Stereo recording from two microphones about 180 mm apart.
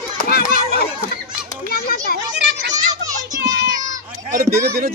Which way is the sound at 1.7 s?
55° left (ahead or behind).